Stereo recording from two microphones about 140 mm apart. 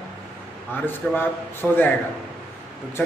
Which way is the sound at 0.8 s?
15° left (ahead or behind).